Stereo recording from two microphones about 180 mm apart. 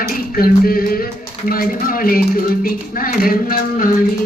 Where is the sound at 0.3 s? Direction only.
55° left (ahead or behind).